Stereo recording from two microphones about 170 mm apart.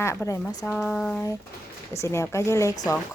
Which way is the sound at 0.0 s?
15° left (ahead or behind).